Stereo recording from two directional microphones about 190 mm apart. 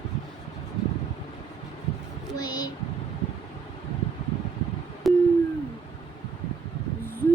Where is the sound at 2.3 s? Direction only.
20° left (ahead or behind).